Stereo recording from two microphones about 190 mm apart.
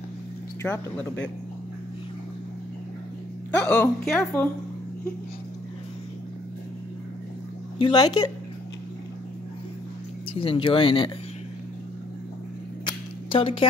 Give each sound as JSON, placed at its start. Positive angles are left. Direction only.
{"t": 0.6, "sound": "speech", "side_deg": 15}
{"t": 3.6, "sound": "speech", "side_deg": 10}
{"t": 7.8, "sound": "speech", "side_deg": 20}
{"t": 10.3, "sound": "speech", "side_deg": 30}
{"t": 13.3, "sound": "speech", "side_deg": 30}